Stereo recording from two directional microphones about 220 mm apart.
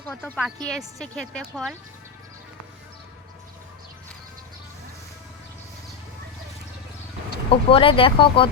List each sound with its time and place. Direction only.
0.0 s speech: 10° left (ahead or behind)
7.5 s speech: 25° left (ahead or behind)